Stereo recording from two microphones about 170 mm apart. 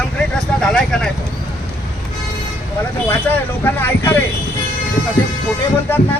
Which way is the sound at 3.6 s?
10° left (ahead or behind).